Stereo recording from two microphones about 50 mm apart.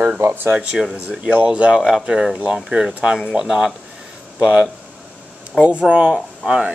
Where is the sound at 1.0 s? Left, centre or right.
Right; by 2.9 s centre.